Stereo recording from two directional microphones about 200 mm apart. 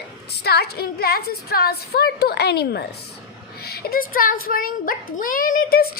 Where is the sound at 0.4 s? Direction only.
50° left (ahead or behind).